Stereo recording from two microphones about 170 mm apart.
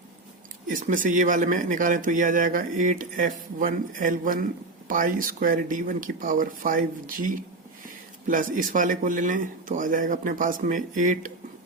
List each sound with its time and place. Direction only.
0.7 s speech: 50° right (ahead or behind)